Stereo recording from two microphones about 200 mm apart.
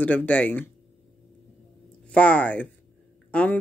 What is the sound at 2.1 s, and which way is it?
A woman's voice, 5° left (ahead or behind).